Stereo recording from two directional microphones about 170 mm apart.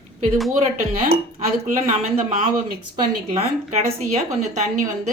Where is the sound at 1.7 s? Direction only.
45° right (ahead or behind).